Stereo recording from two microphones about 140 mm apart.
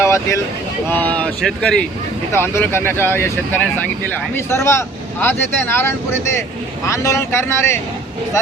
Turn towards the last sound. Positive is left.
turn(degrees=20)  # may be behind; listen again after turning